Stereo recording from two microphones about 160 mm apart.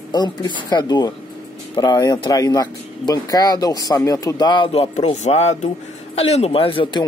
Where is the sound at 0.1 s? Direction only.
25° left (ahead or behind).